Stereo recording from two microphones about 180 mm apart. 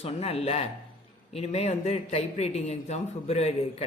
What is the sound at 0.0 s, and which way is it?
Speech, 35° left (ahead or behind).